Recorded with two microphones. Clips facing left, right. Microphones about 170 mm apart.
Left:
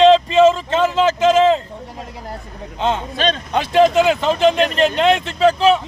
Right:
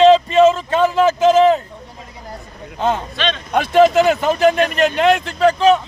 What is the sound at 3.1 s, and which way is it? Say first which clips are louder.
Speech: left 2 dB; 40° left (ahead or behind).